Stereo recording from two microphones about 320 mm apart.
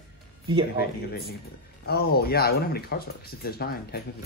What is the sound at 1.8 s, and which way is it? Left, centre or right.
A man's voice, left.